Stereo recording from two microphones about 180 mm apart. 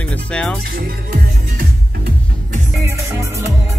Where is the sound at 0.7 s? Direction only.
55° right (ahead or behind).